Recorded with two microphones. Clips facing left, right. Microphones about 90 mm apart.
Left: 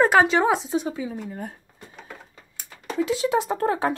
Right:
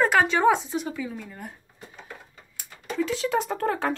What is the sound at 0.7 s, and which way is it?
Speech, 25° left (ahead or behind).